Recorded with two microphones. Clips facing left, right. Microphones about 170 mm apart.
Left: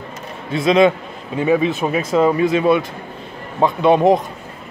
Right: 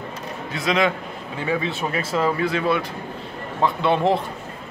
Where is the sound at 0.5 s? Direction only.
25° left (ahead or behind).